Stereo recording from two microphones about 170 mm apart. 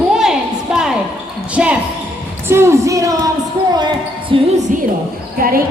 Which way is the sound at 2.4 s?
15° right (ahead or behind).